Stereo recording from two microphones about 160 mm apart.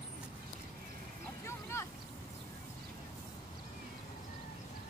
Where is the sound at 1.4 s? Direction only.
15° left (ahead or behind).